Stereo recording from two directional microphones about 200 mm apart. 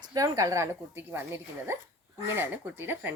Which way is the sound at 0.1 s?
15° right (ahead or behind).